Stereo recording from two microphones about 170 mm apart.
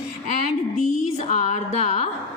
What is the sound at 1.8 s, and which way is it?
Speech, 35° left (ahead or behind).